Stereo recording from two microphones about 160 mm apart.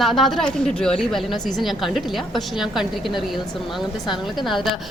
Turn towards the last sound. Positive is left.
turn(degrees=0)  # may be behind; listen again after turning